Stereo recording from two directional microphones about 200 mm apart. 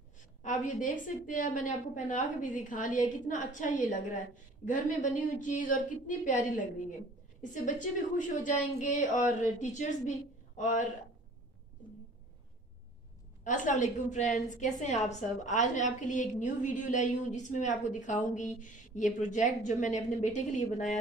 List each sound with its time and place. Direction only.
0.4 s a woman's voice: 40° left (ahead or behind)
8.2 s a woman's voice: 40° left (ahead or behind)
13.4 s a woman's voice: 40° left (ahead or behind)